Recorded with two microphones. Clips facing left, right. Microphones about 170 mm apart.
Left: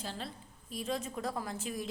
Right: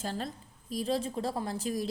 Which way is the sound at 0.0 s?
45° right (ahead or behind).